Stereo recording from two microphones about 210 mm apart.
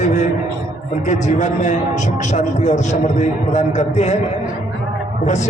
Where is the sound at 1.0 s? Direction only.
35° left (ahead or behind).